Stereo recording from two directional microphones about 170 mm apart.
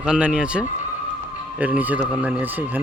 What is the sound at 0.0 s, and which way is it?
Speech, 5° right (ahead or behind).